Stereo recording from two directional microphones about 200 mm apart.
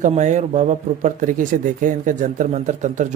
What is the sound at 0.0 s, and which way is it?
Speech, 35° right (ahead or behind).